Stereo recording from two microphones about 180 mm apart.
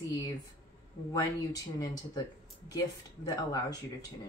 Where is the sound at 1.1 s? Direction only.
20° left (ahead or behind).